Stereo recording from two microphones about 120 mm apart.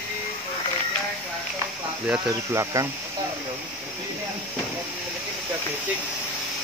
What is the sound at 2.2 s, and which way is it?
Speech, 25° right (ahead or behind).